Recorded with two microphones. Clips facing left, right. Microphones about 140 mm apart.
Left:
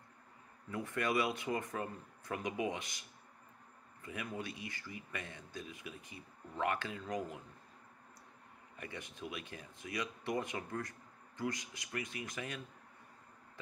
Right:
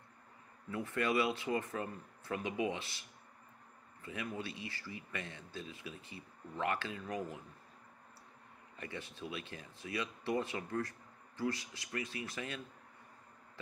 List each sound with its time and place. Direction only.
0.7 s speech: 15° left (ahead or behind)
4.0 s speech: 15° left (ahead or behind)
8.7 s speech: 15° left (ahead or behind)